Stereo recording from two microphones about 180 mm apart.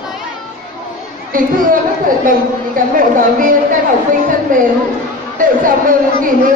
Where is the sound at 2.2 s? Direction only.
50° right (ahead or behind).